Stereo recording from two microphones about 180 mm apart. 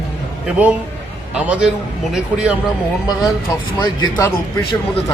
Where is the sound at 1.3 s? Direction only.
5° right (ahead or behind).